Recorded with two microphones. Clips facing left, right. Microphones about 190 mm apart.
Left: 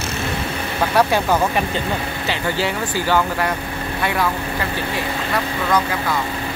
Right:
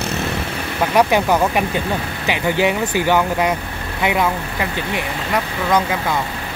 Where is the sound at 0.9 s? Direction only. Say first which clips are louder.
Right 2 dB; 15° right (ahead or behind).